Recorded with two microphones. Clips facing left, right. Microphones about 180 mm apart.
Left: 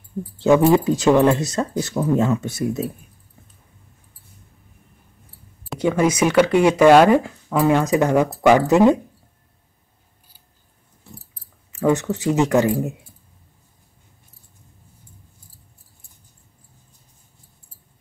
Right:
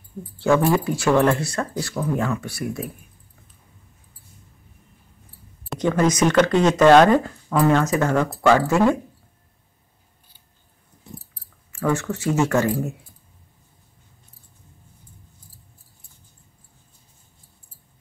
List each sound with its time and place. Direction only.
0.4 s speech: 20° left (ahead or behind)
5.7 s speech: 10° left (ahead or behind)
11.7 s speech: 20° left (ahead or behind)